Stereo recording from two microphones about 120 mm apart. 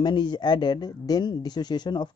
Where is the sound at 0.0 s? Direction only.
40° left (ahead or behind).